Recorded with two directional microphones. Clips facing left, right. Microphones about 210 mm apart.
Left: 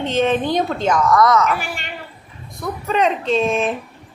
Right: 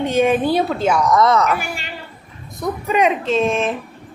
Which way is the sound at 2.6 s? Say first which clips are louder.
Right 2 dB; 10° right (ahead or behind).